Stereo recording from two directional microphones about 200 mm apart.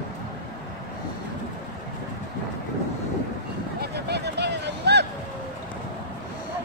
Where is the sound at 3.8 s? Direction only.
55° right (ahead or behind).